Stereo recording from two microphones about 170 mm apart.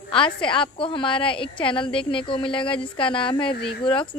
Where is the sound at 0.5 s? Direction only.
30° left (ahead or behind).